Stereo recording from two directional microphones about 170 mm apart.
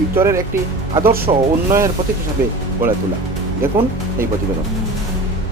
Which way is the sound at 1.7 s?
15° right (ahead or behind).